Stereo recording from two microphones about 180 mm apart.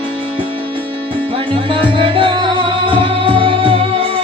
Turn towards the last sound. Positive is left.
turn(degrees=-30)  # may be behind; listen again after turning